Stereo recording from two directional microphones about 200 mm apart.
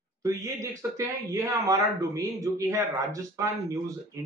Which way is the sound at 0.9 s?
15° right (ahead or behind).